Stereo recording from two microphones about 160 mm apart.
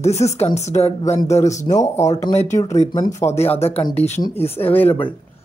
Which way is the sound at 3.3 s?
40° left (ahead or behind).